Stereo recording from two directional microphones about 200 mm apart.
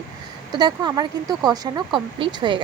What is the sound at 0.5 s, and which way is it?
A woman's voice, 20° right (ahead or behind).